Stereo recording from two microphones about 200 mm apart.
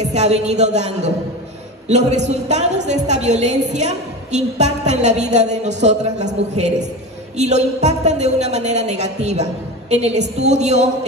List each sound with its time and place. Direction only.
0.0 s a woman's voice: 35° right (ahead or behind)